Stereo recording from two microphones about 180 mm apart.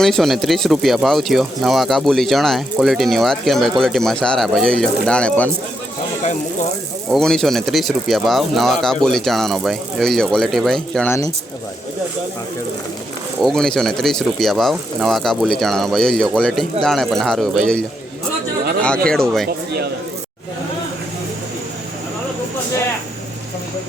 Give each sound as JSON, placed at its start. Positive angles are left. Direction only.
{"t": 0.0, "sound": "speech", "side_deg": 0}
{"t": 7.1, "sound": "speech", "side_deg": 5}
{"t": 13.4, "sound": "speech", "side_deg": 5}
{"t": 19.0, "sound": "speech", "side_deg": 5}